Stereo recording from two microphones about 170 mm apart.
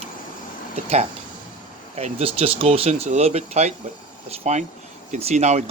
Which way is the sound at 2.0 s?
35° right (ahead or behind).